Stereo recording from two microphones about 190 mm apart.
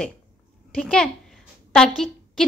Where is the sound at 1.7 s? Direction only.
Centre (ahead or behind).